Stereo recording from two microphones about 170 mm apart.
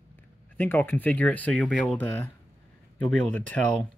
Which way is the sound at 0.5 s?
10° left (ahead or behind).